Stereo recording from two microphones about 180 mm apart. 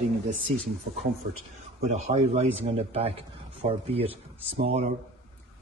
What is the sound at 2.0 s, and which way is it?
Speech, 35° right (ahead or behind).